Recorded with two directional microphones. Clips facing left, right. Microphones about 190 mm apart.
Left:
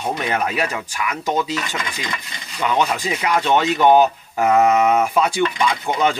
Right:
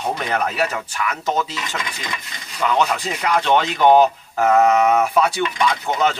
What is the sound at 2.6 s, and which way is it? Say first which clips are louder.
Speech: even; 10° left (ahead or behind).